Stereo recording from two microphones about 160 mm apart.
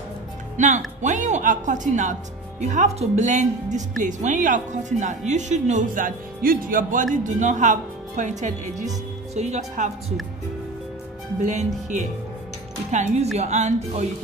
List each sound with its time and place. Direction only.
0.6 s speech: 50° right (ahead or behind)
11.4 s speech: 50° right (ahead or behind)